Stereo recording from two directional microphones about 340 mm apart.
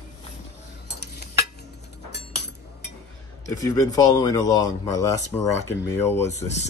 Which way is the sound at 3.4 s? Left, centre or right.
Centre.